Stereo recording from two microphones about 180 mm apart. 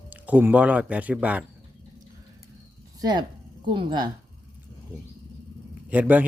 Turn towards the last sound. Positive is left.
turn(degrees=-10)  # may be behind; listen again after turning